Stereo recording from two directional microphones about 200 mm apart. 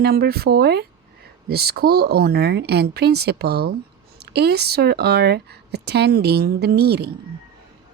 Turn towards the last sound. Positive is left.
turn(degrees=-55)  # may be behind; listen again after turning